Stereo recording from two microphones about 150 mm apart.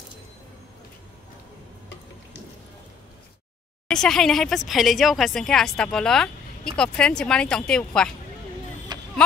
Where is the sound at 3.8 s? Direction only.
5° left (ahead or behind).